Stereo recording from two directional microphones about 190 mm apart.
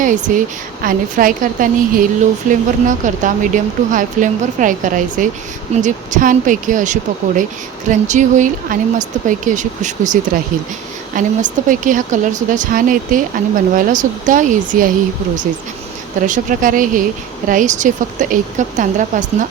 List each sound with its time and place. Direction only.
0.0 s a woman's voice: 40° right (ahead or behind)
16.2 s a woman's voice: 45° right (ahead or behind)